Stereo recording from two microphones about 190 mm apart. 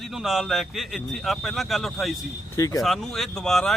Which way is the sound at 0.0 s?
Centre (ahead or behind).